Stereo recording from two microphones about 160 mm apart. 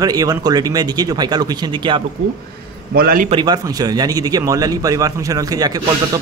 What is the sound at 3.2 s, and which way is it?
A man's voice, 30° right (ahead or behind).